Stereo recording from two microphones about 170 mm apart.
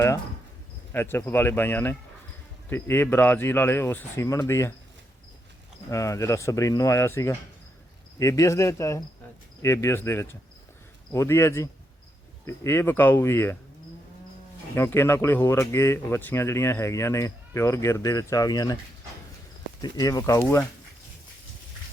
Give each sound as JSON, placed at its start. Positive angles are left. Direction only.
{"t": 0.9, "sound": "speech", "side_deg": 15}
{"t": 5.9, "sound": "speech", "side_deg": 20}
{"t": 14.8, "sound": "speech", "side_deg": 15}
{"t": 19.8, "sound": "speech", "side_deg": 20}